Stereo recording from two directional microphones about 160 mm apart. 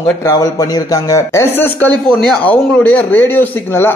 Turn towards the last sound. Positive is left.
turn(degrees=15)  # may be behind; listen again after turning